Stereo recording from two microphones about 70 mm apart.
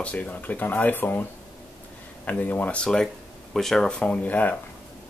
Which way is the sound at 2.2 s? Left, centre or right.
Left.